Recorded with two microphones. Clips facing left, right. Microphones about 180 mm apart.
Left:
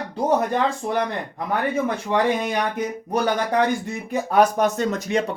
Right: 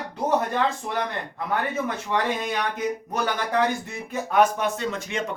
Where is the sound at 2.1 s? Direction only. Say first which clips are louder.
Left 4 dB; 20° left (ahead or behind).